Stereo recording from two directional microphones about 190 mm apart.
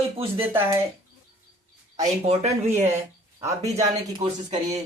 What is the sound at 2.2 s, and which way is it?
Speech, 35° right (ahead or behind).